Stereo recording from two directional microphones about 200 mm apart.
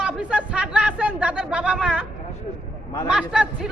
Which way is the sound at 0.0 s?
5° right (ahead or behind).